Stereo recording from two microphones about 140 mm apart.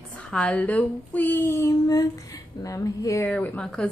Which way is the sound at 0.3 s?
10° left (ahead or behind).